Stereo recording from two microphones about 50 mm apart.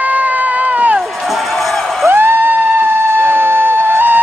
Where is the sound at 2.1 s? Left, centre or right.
Right.